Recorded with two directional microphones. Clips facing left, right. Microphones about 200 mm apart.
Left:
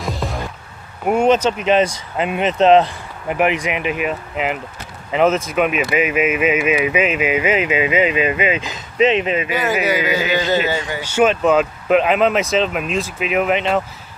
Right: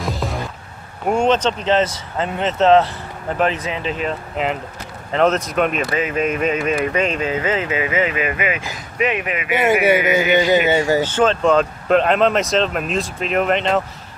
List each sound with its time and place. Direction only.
0.0 s music: centre (ahead or behind)
1.0 s speech: 10° left (ahead or behind); by 9.5 s 25° left (ahead or behind)
9.5 s speech: 25° right (ahead or behind)
11.0 s speech: 10° left (ahead or behind)